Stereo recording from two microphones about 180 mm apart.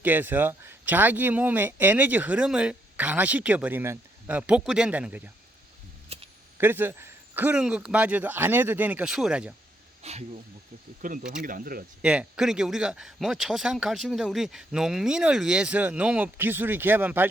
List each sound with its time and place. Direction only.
0.0 s speech: 10° right (ahead or behind)
6.1 s a sound: 35° right (ahead or behind)
6.6 s speech: 10° right (ahead or behind)
10.0 s speech: 35° right (ahead or behind)
11.0 s speech: 50° right (ahead or behind)
12.0 s speech: 5° right (ahead or behind)